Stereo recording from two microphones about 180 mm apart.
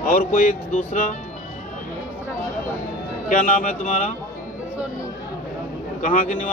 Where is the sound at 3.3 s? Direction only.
45° left (ahead or behind).